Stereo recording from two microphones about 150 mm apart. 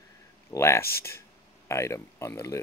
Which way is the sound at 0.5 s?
15° left (ahead or behind).